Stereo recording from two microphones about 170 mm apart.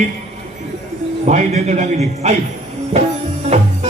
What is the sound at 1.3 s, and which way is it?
A man's voice, 45° right (ahead or behind).